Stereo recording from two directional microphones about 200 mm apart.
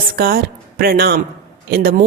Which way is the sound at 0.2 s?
50° right (ahead or behind).